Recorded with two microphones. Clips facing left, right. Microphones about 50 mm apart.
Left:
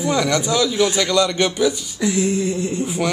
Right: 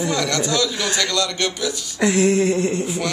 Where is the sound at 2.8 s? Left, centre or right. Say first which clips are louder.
Left 3 dB; centre.